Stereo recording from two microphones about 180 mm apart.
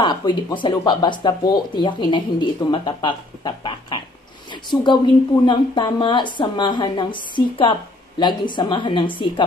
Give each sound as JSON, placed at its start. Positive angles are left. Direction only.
{"t": 0.0, "sound": "speech", "side_deg": 25}